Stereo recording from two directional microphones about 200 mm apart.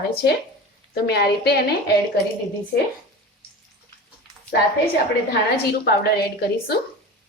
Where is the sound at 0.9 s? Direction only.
55° left (ahead or behind).